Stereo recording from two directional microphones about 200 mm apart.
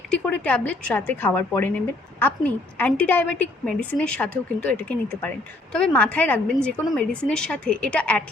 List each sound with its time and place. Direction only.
0.1 s a woman's voice: 5° left (ahead or behind)